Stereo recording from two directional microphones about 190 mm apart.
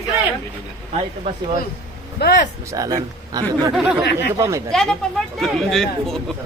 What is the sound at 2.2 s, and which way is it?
Speech, 60° left (ahead or behind).